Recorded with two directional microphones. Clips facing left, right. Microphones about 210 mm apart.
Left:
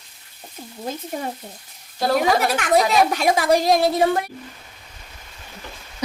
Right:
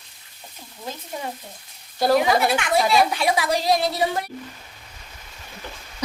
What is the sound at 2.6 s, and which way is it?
A woman's voice, 45° left (ahead or behind).